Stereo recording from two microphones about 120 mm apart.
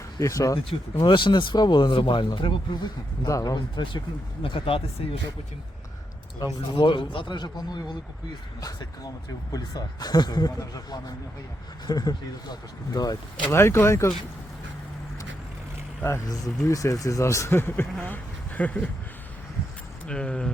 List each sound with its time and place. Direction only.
0.2 s speech: 25° left (ahead or behind)
0.6 s speech: 50° left (ahead or behind)
3.2 s speech: 30° left (ahead or behind)
4.4 s speech: 50° left (ahead or behind)
6.6 s speech: 45° left (ahead or behind); by 14.1 s 25° left (ahead or behind)
16.0 s speech: 25° left (ahead or behind)
20.1 s speech: 10° left (ahead or behind)